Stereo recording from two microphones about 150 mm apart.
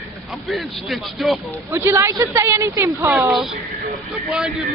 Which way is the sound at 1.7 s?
20° right (ahead or behind).